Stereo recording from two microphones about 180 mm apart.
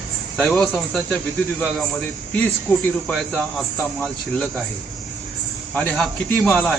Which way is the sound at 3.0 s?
Centre (ahead or behind).